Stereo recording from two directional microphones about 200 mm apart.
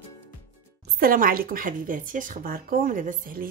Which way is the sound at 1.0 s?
45° right (ahead or behind).